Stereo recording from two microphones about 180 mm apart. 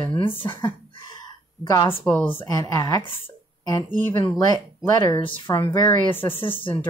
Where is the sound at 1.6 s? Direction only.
15° left (ahead or behind).